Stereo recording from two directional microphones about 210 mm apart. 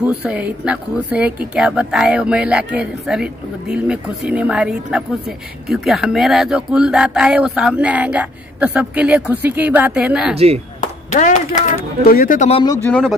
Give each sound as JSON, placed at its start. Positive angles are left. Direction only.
{"t": 0.0, "sound": "speech", "side_deg": -5}
{"t": 10.3, "sound": "speech", "side_deg": -30}
{"t": 11.1, "sound": "speech", "side_deg": 35}
{"t": 12.8, "sound": "speech", "side_deg": 5}